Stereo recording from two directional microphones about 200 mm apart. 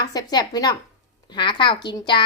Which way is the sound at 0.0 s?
20° left (ahead or behind).